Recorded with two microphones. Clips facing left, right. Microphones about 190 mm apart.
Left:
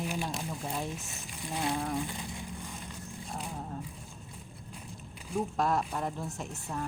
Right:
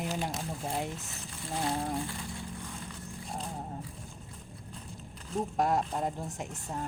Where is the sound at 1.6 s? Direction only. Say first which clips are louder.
Even; 25° right (ahead or behind).